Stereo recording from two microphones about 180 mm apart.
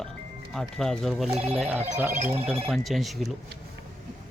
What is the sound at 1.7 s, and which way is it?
Speech, 40° right (ahead or behind).